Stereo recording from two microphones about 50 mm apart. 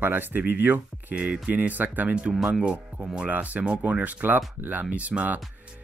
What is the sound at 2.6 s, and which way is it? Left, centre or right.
Speech, centre.